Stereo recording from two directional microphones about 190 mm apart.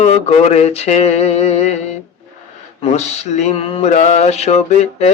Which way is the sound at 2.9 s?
35° left (ahead or behind).